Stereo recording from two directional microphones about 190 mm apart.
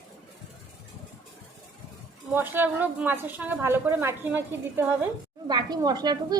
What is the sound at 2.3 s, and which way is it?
A woman's voice, 10° right (ahead or behind).